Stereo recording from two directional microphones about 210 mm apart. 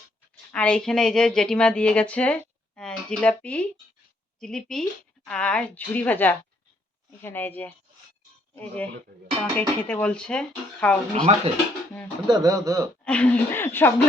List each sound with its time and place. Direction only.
0.5 s speech: 5° left (ahead or behind)
11.2 s speech: 30° right (ahead or behind)
12.3 s speech: 15° right (ahead or behind)
13.1 s speech: 5° left (ahead or behind)